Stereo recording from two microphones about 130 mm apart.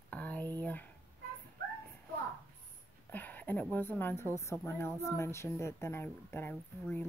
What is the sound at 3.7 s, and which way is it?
Speech, 15° left (ahead or behind).